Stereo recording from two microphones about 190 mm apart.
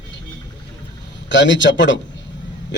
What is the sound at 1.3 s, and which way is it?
Speech, 75° left (ahead or behind).